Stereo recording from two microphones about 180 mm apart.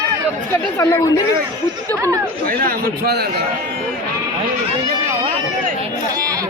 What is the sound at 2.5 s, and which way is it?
Speech, 55° right (ahead or behind).